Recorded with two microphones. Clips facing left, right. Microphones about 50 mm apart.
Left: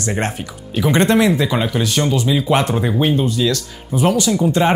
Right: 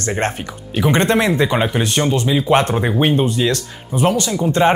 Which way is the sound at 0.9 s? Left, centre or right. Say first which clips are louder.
Left 1 dB; right.